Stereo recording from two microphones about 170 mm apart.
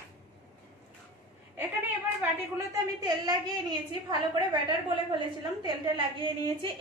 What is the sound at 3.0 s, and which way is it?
A woman's voice, 25° right (ahead or behind).